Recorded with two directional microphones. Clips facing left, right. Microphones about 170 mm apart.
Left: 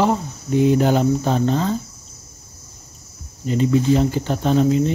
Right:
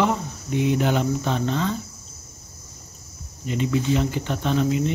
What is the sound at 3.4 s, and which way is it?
Speech, 35° left (ahead or behind).